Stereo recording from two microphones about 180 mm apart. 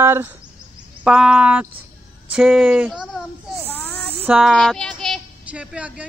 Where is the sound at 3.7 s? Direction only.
10° left (ahead or behind).